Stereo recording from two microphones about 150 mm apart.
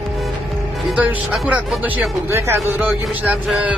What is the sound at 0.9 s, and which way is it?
Speech, 5° right (ahead or behind).